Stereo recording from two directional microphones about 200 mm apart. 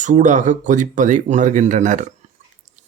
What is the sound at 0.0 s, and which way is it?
Speech, 40° right (ahead or behind).